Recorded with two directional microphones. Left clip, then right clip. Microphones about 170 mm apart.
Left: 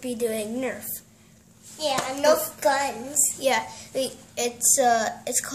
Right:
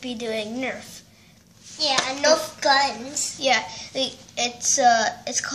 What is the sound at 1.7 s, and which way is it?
A child's voice, 25° left (ahead or behind).